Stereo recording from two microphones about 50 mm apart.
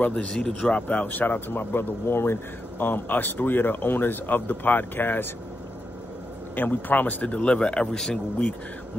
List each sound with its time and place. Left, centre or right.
0.1 s speech: centre
0.7 s speech: left
2.8 s speech: left
6.5 s speech: left; by 8.5 s centre